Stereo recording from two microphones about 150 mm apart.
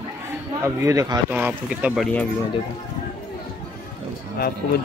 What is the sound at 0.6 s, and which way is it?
Speech, 20° right (ahead or behind).